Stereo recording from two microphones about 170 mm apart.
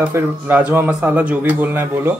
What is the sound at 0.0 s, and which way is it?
A man's voice, 10° right (ahead or behind).